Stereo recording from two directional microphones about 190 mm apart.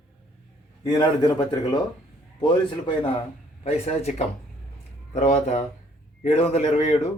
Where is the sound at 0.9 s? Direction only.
20° left (ahead or behind).